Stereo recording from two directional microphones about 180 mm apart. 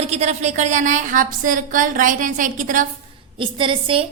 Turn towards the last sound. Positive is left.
turn(degrees=-30)  # may be behind; listen again after turning